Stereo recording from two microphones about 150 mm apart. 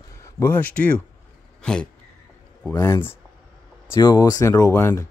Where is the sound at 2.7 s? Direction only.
20° left (ahead or behind).